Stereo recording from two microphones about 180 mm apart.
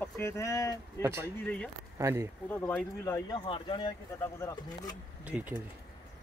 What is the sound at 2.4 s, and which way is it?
Speech, 10° left (ahead or behind).